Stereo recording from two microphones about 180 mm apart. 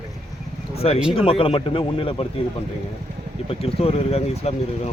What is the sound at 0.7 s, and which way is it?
Speech, 35° left (ahead or behind).